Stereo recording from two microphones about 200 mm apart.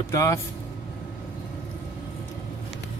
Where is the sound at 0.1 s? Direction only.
15° left (ahead or behind).